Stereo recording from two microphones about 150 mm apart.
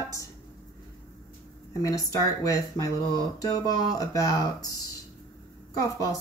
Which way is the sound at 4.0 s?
25° left (ahead or behind).